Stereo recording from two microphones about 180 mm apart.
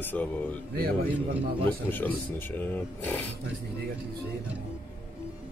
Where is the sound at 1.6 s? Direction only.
10° left (ahead or behind).